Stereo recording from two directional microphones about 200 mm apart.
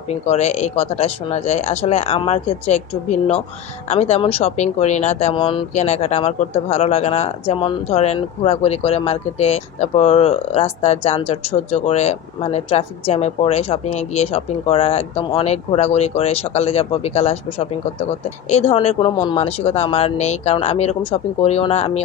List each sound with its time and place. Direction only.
0.3 s speech: 35° left (ahead or behind)